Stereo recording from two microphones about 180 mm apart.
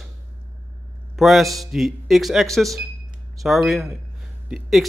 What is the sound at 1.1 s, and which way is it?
A man's voice, centre (ahead or behind).